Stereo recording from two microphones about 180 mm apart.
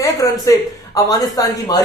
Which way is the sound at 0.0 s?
20° left (ahead or behind).